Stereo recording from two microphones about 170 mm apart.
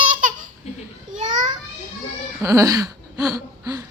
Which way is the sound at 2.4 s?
20° right (ahead or behind).